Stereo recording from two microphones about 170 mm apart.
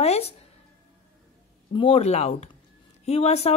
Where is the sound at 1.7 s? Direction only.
35° left (ahead or behind).